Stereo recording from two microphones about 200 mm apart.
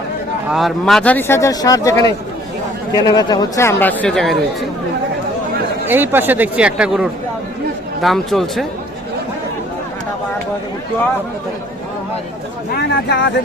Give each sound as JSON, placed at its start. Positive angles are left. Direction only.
{"t": 0.5, "sound": "speech", "side_deg": 0}
{"t": 3.1, "sound": "speech", "side_deg": 20}
{"t": 5.9, "sound": "speech", "side_deg": -10}
{"t": 12.7, "sound": "speech", "side_deg": 60}